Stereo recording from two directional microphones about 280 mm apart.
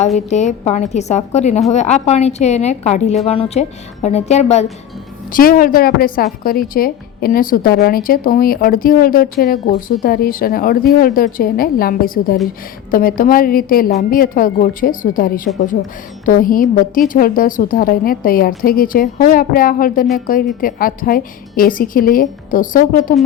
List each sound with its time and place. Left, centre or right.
0.3 s a woman's voice: left